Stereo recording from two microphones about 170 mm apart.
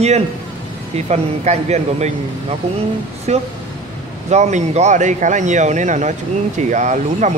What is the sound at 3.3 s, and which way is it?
Speech, 40° right (ahead or behind).